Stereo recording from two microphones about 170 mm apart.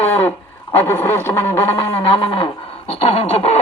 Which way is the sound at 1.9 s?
35° left (ahead or behind).